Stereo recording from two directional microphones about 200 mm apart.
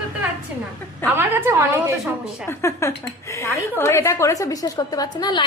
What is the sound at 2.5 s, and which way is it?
A woman's voice, 15° left (ahead or behind).